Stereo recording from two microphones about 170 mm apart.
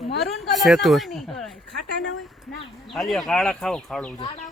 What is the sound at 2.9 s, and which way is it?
Speech, centre (ahead or behind).